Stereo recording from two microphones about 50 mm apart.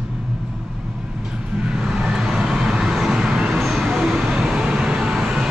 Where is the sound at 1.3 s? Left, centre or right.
Centre.